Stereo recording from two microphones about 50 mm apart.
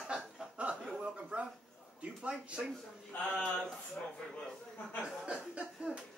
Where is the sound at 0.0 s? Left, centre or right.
Centre.